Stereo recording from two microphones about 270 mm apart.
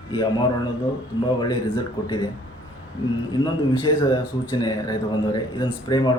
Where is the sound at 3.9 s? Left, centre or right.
Centre.